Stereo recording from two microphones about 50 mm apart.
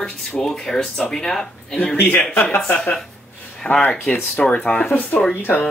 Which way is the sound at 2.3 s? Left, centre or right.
Left.